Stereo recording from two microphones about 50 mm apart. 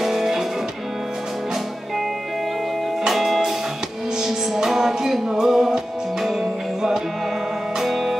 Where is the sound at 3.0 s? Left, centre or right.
Centre.